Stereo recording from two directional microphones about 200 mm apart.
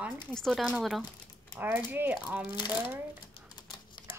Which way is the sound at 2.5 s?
20° left (ahead or behind).